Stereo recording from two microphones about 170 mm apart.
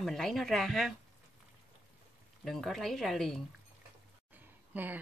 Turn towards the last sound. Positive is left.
turn(degrees=-10)  # may be behind; listen again after turning